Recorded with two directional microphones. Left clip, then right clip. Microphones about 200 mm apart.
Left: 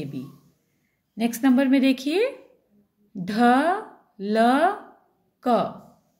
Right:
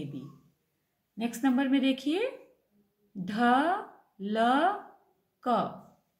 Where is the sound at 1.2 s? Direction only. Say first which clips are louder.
Left 8 dB; 45° left (ahead or behind).